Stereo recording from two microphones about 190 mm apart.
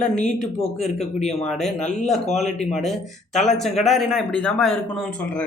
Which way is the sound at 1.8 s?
40° left (ahead or behind).